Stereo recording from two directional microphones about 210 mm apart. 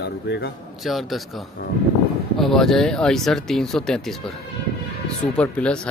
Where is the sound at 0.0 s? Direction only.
50° left (ahead or behind).